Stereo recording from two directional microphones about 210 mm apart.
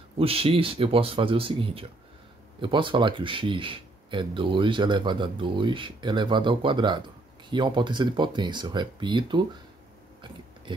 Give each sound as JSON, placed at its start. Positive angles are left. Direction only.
{"t": 0.2, "sound": "speech", "side_deg": -25}